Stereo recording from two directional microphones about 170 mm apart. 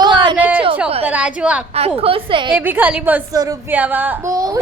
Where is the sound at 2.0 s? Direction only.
30° right (ahead or behind).